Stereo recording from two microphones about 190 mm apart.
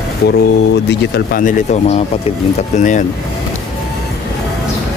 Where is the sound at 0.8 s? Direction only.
60° left (ahead or behind).